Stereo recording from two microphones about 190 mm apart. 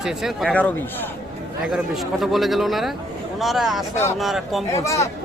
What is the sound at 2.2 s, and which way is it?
Speech, centre (ahead or behind).